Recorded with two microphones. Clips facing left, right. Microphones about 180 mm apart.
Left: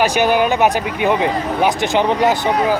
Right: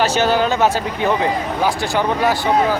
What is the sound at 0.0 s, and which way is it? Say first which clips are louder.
Speech: left 2 dB; 15° left (ahead or behind).